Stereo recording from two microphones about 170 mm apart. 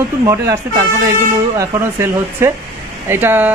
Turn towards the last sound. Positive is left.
turn(degrees=-10)  # may be behind; listen again after turning